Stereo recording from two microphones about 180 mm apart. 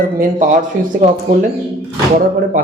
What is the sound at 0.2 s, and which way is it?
Speech, 45° right (ahead or behind).